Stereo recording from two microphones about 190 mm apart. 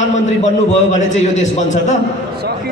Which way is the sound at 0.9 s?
40° left (ahead or behind).